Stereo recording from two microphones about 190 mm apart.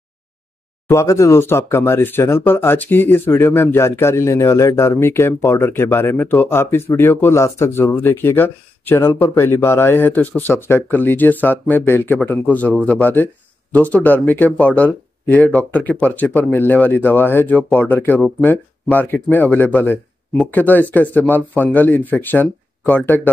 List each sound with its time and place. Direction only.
0.8 s speech: 15° left (ahead or behind)